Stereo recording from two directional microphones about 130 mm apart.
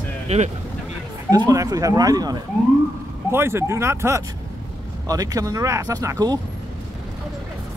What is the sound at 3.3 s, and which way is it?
Speech, 20° right (ahead or behind).